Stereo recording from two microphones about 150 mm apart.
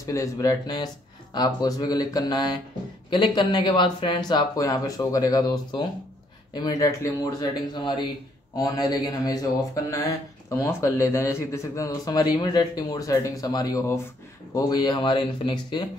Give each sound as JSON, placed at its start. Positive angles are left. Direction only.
{"t": 0.0, "sound": "speech", "side_deg": 20}